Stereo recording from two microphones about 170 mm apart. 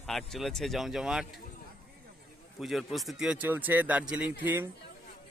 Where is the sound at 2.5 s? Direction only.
Centre (ahead or behind).